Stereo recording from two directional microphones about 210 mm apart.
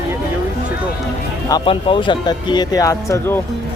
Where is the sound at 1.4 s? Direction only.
20° left (ahead or behind).